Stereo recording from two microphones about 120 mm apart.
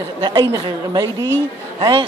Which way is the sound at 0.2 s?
35° right (ahead or behind).